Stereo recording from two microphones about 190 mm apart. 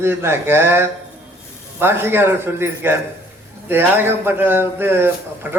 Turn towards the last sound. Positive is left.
turn(degrees=-10)  # may be behind; listen again after turning